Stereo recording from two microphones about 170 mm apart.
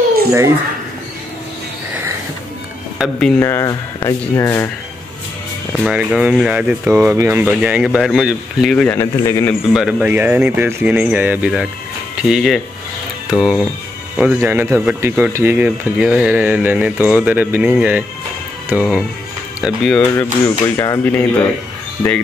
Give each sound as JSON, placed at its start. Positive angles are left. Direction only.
{"t": 3.0, "sound": "speech", "side_deg": 5}
{"t": 3.3, "sound": "speech", "side_deg": 15}
{"t": 5.9, "sound": "speech", "side_deg": -5}
{"t": 8.7, "sound": "speech", "side_deg": 10}
{"t": 9.7, "sound": "speech", "side_deg": -5}
{"t": 20.2, "sound": "speech", "side_deg": 15}